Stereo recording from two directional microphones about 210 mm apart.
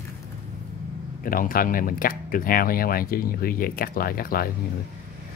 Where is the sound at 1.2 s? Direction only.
40° left (ahead or behind).